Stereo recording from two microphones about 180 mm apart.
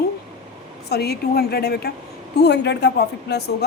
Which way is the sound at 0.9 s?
60° left (ahead or behind).